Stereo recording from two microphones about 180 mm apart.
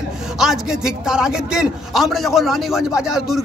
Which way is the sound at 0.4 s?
5° right (ahead or behind).